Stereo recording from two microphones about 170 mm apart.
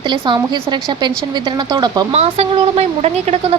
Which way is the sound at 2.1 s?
40° right (ahead or behind).